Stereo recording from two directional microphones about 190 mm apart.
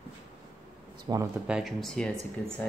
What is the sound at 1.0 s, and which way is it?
Speech, 20° right (ahead or behind).